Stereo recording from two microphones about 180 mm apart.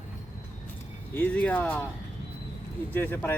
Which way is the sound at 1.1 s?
10° left (ahead or behind).